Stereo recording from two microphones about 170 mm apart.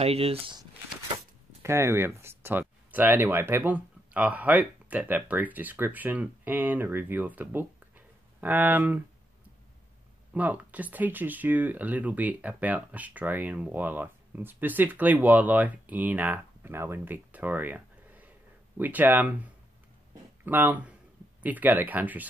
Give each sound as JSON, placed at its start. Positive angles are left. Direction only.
{"t": 0.0, "sound": "speech", "side_deg": -35}
{"t": 1.6, "sound": "speech", "side_deg": -15}
{"t": 10.3, "sound": "speech", "side_deg": -10}